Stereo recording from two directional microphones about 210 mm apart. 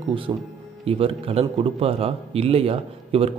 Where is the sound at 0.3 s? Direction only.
20° right (ahead or behind).